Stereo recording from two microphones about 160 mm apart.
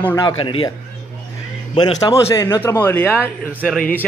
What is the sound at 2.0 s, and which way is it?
Speech, 20° left (ahead or behind).